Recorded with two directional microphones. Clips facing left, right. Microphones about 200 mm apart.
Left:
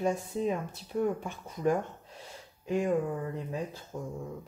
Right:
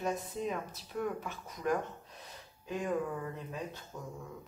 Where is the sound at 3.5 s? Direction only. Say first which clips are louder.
Left 5 dB; 30° left (ahead or behind).